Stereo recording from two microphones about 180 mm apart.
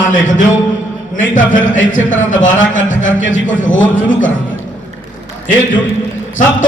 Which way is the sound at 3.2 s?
90° left.